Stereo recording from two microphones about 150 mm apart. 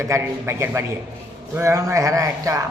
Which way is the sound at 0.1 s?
15° right (ahead or behind).